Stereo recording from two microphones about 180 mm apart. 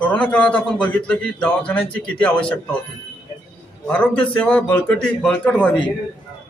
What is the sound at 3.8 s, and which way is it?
A man's voice, 10° left (ahead or behind).